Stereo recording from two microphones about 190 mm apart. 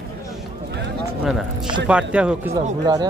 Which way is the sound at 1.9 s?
5° right (ahead or behind).